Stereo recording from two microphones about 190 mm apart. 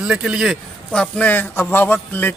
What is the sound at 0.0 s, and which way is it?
A man's voice, 5° right (ahead or behind).